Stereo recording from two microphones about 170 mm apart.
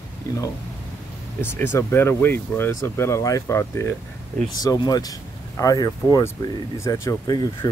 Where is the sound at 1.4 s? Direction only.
15° left (ahead or behind).